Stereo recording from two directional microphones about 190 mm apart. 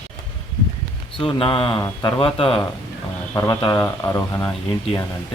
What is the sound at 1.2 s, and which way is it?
A man's voice, 30° left (ahead or behind).